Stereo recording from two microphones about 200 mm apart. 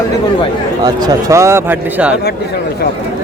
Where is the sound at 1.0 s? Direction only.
15° right (ahead or behind).